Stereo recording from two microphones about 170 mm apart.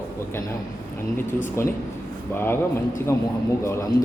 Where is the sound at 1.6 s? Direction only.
15° left (ahead or behind).